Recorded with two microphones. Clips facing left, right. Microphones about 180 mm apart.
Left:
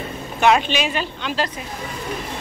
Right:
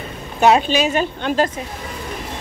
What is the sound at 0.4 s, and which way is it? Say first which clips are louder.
A woman's voice: right 3 dB; 40° right (ahead or behind).